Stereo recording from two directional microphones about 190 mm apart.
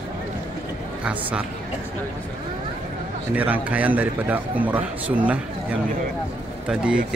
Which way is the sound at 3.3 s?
10° right (ahead or behind).